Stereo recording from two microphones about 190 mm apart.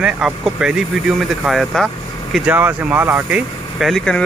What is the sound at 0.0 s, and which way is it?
Speech, 5° right (ahead or behind).